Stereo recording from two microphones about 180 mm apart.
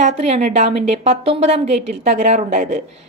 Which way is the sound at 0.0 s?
40° right (ahead or behind).